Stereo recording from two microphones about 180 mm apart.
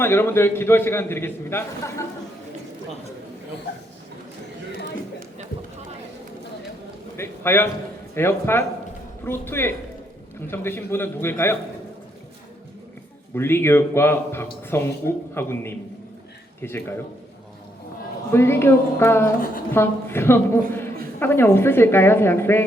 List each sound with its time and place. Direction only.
0.0 s a man's voice: 15° left (ahead or behind)
7.2 s a man's voice: 15° left (ahead or behind)
13.3 s a man's voice: 15° left (ahead or behind)
18.3 s a man's voice: 15° left (ahead or behind)